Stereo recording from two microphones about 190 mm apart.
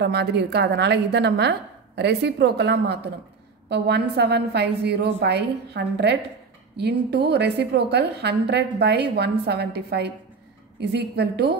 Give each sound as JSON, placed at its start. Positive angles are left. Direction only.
{"t": 0.0, "sound": "a woman's voice", "side_deg": -60}